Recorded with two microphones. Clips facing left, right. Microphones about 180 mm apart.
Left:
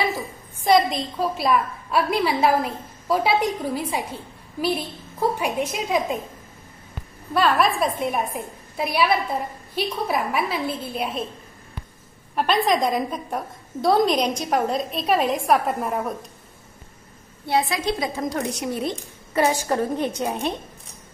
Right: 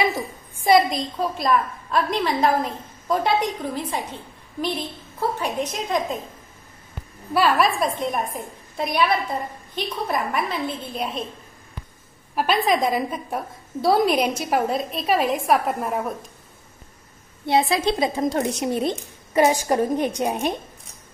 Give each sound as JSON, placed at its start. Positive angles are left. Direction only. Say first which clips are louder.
{"t": 0.7, "sound": "a woman's voice", "louder": "right 1 dB", "side_deg": -5}
{"t": 7.3, "sound": "a woman's voice", "louder": "even", "side_deg": -5}
{"t": 12.4, "sound": "a woman's voice", "louder": "even", "side_deg": -5}
{"t": 17.5, "sound": "speech", "louder": "right 3 dB", "side_deg": -25}